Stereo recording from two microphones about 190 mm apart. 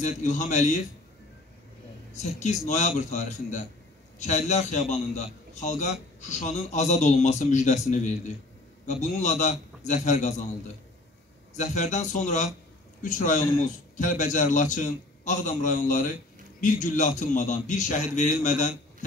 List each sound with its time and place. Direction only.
0.0 s a man's voice: 40° left (ahead or behind)
2.1 s a man's voice: 35° left (ahead or behind)
11.5 s a man's voice: 40° left (ahead or behind)